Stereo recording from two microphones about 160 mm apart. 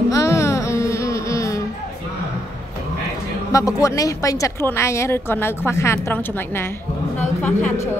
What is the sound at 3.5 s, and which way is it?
Speech, 20° left (ahead or behind).